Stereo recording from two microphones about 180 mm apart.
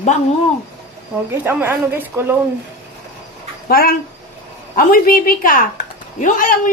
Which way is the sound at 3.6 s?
55° left (ahead or behind).